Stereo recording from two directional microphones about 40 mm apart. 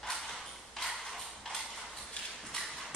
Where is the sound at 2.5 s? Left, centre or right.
Left.